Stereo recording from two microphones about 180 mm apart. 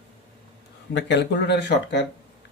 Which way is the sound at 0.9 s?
75° left (ahead or behind).